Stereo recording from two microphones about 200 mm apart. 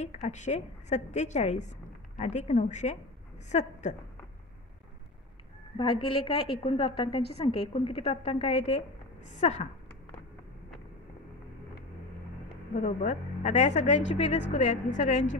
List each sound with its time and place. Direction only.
0.0 s a woman's voice: 35° left (ahead or behind)
5.8 s a woman's voice: 25° left (ahead or behind)
12.7 s a woman's voice: 35° left (ahead or behind)